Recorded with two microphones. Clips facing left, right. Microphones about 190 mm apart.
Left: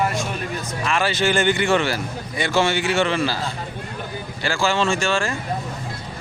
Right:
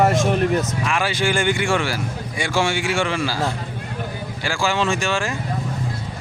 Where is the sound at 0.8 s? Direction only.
15° right (ahead or behind).